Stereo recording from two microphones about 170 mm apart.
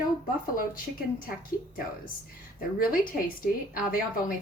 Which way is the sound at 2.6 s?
55° left (ahead or behind).